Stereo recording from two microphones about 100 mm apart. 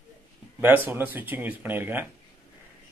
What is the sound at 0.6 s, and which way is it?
Speech, 20° right (ahead or behind).